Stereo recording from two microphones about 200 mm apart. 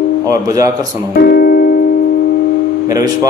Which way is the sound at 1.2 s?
50° left (ahead or behind).